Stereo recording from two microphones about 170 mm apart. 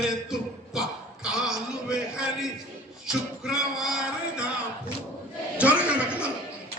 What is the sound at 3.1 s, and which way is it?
Music, 5° right (ahead or behind).